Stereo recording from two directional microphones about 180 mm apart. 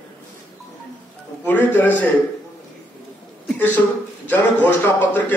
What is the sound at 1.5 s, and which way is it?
Speech, 10° left (ahead or behind).